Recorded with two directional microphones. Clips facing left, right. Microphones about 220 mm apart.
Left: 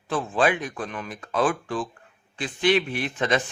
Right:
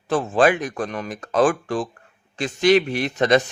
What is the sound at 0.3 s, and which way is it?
Speech, 45° right (ahead or behind).